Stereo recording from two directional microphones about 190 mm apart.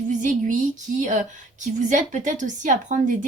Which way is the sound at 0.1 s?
40° right (ahead or behind).